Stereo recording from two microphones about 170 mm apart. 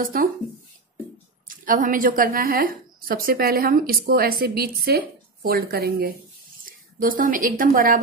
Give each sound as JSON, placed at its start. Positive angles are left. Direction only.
{"t": 0.0, "sound": "a woman's voice", "side_deg": -55}
{"t": 1.6, "sound": "a woman's voice", "side_deg": -55}